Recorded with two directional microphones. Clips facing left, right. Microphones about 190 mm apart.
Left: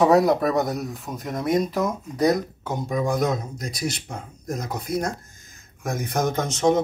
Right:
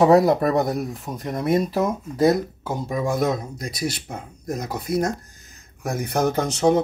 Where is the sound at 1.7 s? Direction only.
25° right (ahead or behind).